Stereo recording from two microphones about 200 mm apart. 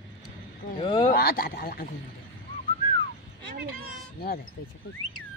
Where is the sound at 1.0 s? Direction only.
50° left (ahead or behind).